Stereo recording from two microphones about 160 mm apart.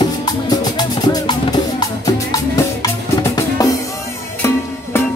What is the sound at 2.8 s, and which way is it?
Music, 20° left (ahead or behind).